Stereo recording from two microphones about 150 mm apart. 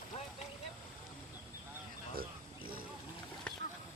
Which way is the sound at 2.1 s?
75° right (ahead or behind).